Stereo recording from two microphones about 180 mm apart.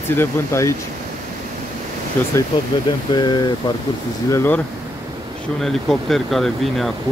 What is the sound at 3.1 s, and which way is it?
Speech, 25° left (ahead or behind).